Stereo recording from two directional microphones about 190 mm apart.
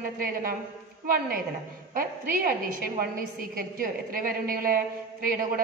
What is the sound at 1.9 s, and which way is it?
A woman's voice, 50° right (ahead or behind).